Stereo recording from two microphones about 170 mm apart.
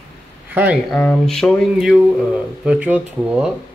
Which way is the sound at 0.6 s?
10° right (ahead or behind).